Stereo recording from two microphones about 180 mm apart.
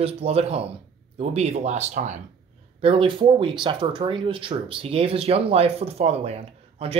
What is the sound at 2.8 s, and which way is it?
Speech, 30° right (ahead or behind).